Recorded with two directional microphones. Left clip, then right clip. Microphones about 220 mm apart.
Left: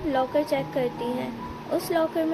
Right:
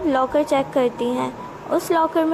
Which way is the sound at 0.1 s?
20° right (ahead or behind).